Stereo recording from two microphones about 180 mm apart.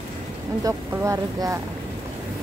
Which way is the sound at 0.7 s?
20° right (ahead or behind).